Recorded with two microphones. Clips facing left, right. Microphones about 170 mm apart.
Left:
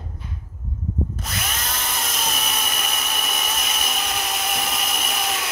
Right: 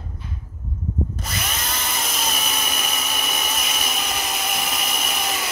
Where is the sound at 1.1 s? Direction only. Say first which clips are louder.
Right 1 dB; centre (ahead or behind).